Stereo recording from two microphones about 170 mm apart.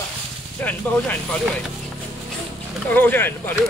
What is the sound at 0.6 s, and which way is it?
Speech, 10° left (ahead or behind).